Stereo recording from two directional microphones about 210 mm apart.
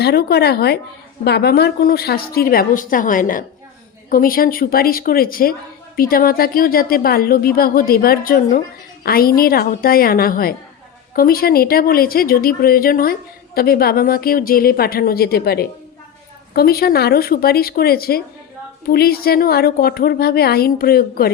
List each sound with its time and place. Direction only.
0.0 s speech: 50° left (ahead or behind)